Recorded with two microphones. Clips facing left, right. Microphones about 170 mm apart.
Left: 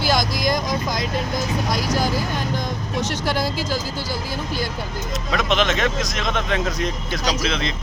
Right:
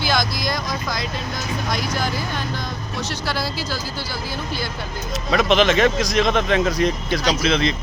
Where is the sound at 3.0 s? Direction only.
50° left (ahead or behind).